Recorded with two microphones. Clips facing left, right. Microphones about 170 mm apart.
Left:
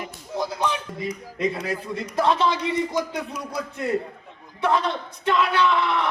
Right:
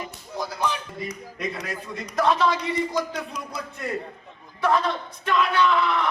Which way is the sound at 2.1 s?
25° left (ahead or behind).